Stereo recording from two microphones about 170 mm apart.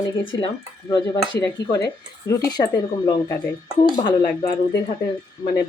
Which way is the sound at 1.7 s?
20° left (ahead or behind).